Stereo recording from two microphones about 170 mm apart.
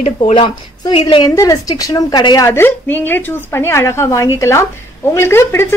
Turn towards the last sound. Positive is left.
turn(degrees=15)  # may be behind; listen again after turning